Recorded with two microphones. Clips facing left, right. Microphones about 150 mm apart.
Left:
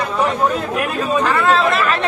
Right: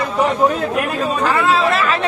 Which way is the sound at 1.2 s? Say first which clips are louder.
Right 1 dB; 5° right (ahead or behind).